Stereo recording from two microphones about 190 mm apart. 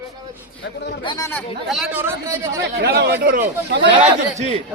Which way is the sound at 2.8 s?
55° right (ahead or behind).